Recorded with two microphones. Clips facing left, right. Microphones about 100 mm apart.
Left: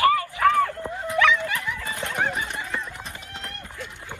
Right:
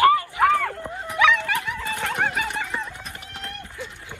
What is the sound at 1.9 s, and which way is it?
Neigh, 90° right.